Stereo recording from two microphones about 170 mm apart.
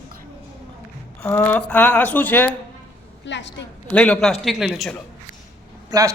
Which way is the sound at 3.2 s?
90° left.